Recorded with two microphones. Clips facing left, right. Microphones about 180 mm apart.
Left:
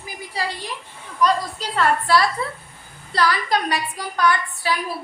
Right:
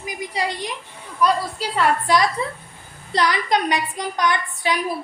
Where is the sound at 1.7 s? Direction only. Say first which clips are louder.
Even; 15° right (ahead or behind).